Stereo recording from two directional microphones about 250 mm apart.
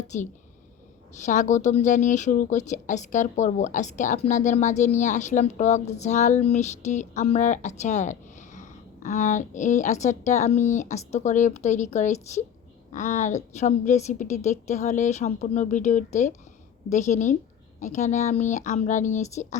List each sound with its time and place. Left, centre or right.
0.1 s a woman's voice: left